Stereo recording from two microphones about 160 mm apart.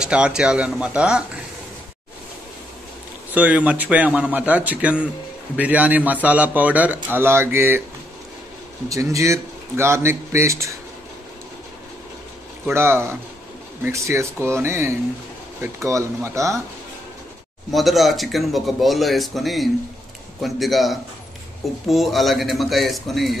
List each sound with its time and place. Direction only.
0.0 s a man's voice: 5° right (ahead or behind)
3.3 s a man's voice: 10° right (ahead or behind)
8.8 s speech: 20° right (ahead or behind)
12.7 s a man's voice: 15° right (ahead or behind)
17.6 s speech: centre (ahead or behind)